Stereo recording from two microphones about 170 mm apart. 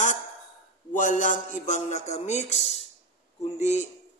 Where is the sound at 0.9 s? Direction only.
50° left (ahead or behind).